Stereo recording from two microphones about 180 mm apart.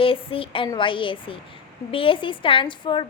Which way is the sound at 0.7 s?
30° left (ahead or behind).